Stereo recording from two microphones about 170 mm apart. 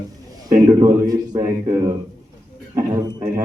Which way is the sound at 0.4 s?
20° right (ahead or behind).